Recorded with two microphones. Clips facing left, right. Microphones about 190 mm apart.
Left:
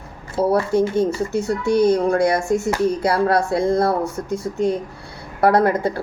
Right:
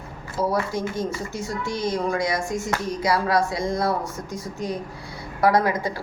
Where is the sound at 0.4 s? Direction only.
65° left (ahead or behind).